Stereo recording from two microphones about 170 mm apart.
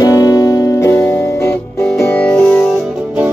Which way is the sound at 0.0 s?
20° left (ahead or behind).